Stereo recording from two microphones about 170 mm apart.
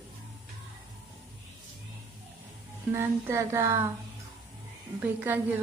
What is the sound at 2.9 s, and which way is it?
Music, 15° right (ahead or behind).